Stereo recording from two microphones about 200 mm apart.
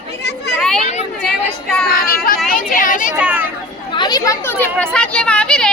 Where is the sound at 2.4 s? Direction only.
45° left (ahead or behind).